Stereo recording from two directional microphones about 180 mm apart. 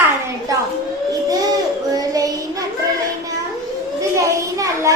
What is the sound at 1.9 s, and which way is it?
Child singing, 20° right (ahead or behind).